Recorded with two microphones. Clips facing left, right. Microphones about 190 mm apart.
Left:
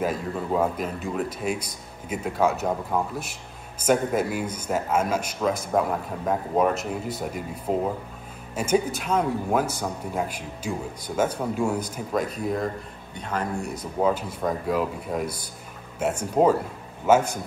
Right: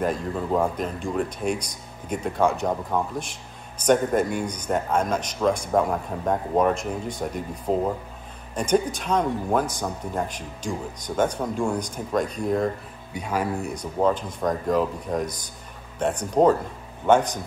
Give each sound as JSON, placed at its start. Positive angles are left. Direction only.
{"t": 0.0, "sound": "a man's voice", "side_deg": 5}
{"t": 13.1, "sound": "a man's voice", "side_deg": -10}